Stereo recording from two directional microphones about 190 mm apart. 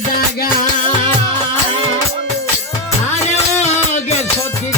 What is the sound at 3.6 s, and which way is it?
Music, 35° left (ahead or behind).